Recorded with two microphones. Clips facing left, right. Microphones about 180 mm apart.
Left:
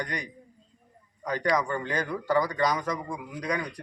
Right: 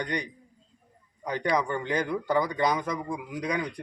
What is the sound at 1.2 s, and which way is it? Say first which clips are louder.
Speech: even; 15° right (ahead or behind).